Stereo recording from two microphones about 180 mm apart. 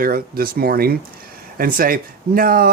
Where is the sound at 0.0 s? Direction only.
55° right (ahead or behind).